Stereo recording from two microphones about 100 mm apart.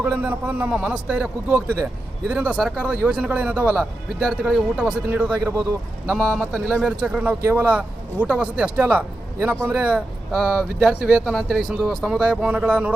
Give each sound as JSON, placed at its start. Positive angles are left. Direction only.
{"t": 0.0, "sound": "speech", "side_deg": -20}